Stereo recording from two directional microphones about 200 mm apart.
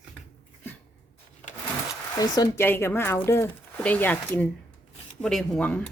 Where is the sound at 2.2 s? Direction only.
20° left (ahead or behind).